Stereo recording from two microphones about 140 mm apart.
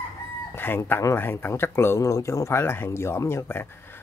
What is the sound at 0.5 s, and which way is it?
Speech, 15° left (ahead or behind).